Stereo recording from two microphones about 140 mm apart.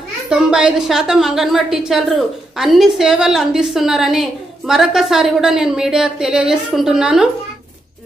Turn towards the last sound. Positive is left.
turn(degrees=-5)  # may be behind; listen again after turning